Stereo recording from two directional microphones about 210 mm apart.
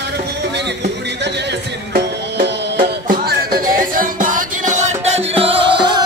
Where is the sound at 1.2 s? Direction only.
50° right (ahead or behind).